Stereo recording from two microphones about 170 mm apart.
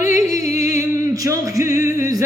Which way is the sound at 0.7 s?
20° right (ahead or behind).